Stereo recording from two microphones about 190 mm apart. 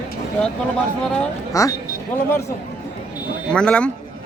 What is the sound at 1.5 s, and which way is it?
Speech, 15° left (ahead or behind).